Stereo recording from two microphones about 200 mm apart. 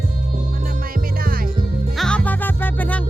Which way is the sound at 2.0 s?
5° left (ahead or behind).